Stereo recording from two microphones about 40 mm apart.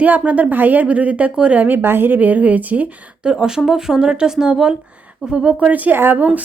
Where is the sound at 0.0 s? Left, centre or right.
Right.